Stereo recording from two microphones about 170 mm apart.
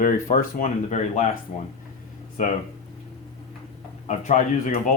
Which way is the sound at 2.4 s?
45° left (ahead or behind).